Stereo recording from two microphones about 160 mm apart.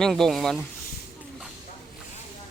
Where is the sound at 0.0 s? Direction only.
Centre (ahead or behind).